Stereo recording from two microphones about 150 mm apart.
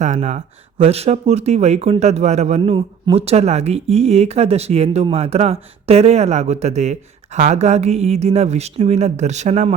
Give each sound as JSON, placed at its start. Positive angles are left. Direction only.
{"t": 0.0, "sound": "speech", "side_deg": -50}
{"t": 2.6, "sound": "speech", "side_deg": -35}